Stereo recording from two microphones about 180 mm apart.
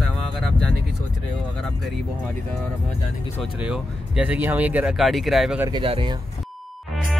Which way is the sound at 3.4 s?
5° right (ahead or behind).